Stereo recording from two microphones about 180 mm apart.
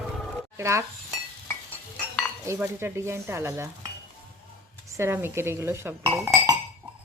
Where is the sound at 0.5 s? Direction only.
15° right (ahead or behind).